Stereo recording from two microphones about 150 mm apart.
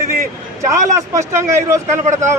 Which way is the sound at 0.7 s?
20° right (ahead or behind).